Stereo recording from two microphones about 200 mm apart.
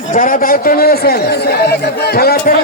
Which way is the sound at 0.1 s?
40° left (ahead or behind).